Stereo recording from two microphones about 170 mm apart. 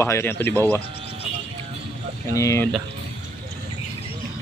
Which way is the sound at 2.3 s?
20° left (ahead or behind).